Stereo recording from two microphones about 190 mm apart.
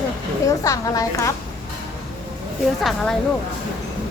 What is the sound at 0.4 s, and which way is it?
Speech, 15° left (ahead or behind).